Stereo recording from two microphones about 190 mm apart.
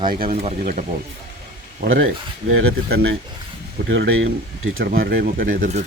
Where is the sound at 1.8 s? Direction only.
90° right; by 3.2 s 75° right (ahead or behind).